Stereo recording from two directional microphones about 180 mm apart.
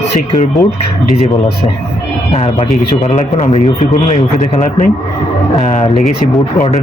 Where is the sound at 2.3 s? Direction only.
35° left (ahead or behind).